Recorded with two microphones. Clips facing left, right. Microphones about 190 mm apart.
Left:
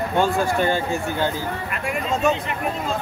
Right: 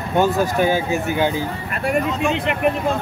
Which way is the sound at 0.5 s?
10° right (ahead or behind).